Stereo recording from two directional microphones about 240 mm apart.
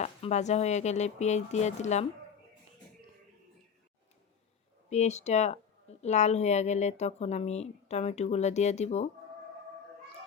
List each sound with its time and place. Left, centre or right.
0.0 s speech: left
4.9 s speech: left